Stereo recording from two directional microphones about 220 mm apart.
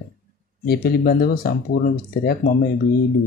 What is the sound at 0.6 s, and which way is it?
Speech, 40° left (ahead or behind).